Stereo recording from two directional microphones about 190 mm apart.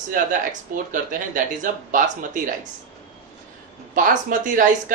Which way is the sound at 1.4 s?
40° right (ahead or behind).